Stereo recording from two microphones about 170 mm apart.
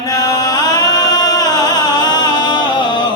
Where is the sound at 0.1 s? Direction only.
20° left (ahead or behind).